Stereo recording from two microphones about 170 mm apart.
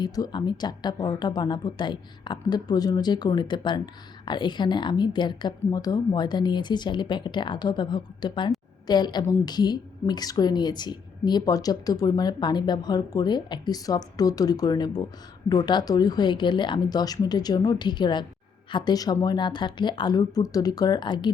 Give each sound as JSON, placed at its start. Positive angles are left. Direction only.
{"t": 0.0, "sound": "a woman's voice", "side_deg": 25}